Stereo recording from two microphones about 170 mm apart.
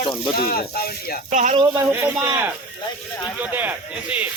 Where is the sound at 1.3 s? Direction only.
45° right (ahead or behind).